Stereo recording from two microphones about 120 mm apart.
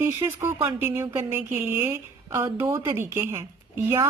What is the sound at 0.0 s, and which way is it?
A woman's voice, 20° right (ahead or behind).